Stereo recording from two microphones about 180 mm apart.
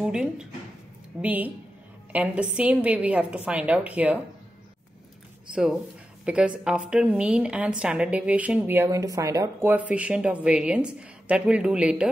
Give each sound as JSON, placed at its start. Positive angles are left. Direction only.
{"t": 0.0, "sound": "a woman's voice", "side_deg": -5}
{"t": 5.5, "sound": "a woman's voice", "side_deg": -5}